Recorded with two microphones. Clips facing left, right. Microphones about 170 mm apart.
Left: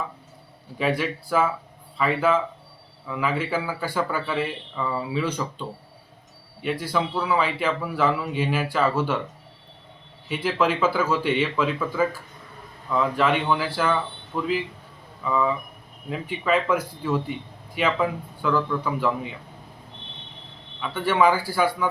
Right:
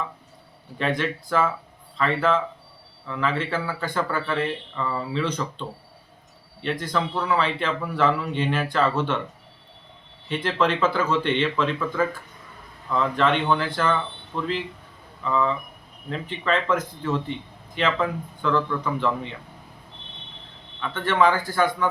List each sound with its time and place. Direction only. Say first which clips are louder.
0.8 s speech: left 1 dB; 10° left (ahead or behind)
10.2 s speech: even; 10° left (ahead or behind)
20.8 s speech: left 1 dB; 10° left (ahead or behind)